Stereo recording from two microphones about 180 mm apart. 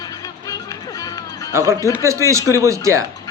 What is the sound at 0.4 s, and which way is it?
Music, 20° left (ahead or behind).